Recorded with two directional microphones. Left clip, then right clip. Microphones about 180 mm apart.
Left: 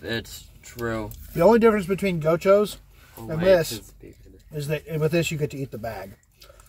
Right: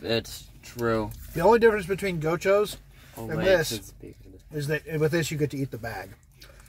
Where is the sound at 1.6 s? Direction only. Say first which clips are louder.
Left 2 dB; 10° left (ahead or behind).